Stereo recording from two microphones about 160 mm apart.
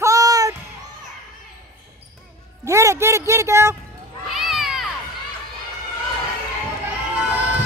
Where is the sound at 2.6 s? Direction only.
20° right (ahead or behind).